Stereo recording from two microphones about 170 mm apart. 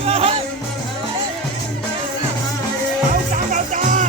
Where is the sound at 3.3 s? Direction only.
50° right (ahead or behind).